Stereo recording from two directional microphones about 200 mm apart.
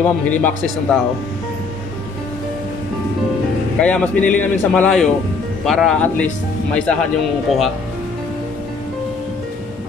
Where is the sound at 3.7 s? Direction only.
5° left (ahead or behind).